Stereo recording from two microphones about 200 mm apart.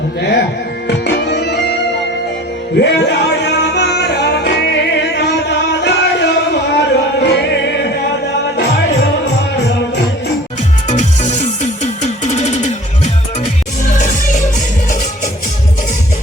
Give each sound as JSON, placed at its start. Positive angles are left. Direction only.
{"t": 0.2, "sound": "music", "side_deg": 55}
{"t": 2.7, "sound": "music", "side_deg": 60}
{"t": 10.8, "sound": "music", "side_deg": 35}
{"t": 14.0, "sound": "music", "side_deg": 40}